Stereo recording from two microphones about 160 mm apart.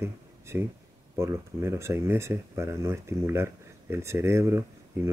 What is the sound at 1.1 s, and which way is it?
Speech, 15° right (ahead or behind).